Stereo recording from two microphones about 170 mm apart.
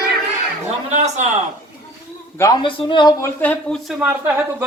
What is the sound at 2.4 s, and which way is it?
Speech, 25° left (ahead or behind).